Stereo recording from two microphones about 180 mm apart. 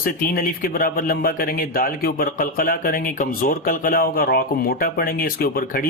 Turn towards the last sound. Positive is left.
turn(degrees=50)  # may be behind; listen again after turning